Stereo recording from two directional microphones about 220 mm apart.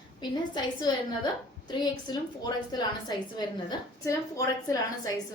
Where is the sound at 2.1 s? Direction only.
20° left (ahead or behind).